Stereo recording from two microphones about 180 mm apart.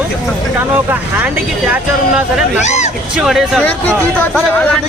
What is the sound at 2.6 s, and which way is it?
Speech, 40° left (ahead or behind).